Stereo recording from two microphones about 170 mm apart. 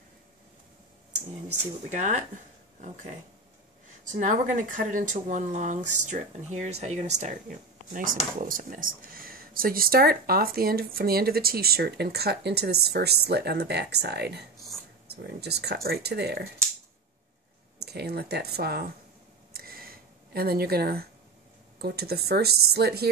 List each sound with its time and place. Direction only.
1.9 s speech: 45° right (ahead or behind); by 16.4 s 70° right (ahead or behind)
17.7 s speech: 70° right (ahead or behind)
19.5 s a sound: 60° right (ahead or behind)
21.7 s speech: 70° right (ahead or behind)